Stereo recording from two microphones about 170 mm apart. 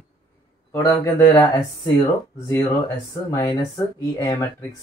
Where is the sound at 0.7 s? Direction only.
20° left (ahead or behind).